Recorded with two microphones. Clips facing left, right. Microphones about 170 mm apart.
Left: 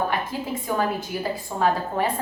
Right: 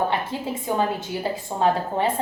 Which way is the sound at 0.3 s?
25° right (ahead or behind).